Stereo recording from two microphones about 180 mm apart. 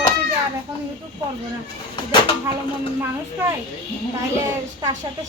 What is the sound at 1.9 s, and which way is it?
Speech, 25° left (ahead or behind).